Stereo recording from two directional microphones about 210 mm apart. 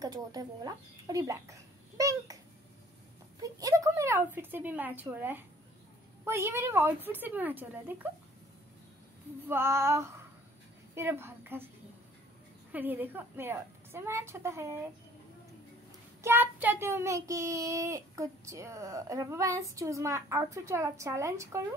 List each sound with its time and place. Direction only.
0.0 s speech: 20° right (ahead or behind)
3.5 s a child's voice: 15° right (ahead or behind)
9.5 s a child's voice: 10° right (ahead or behind)
12.7 s a child's voice: 10° right (ahead or behind)
16.2 s a child's voice: 10° right (ahead or behind)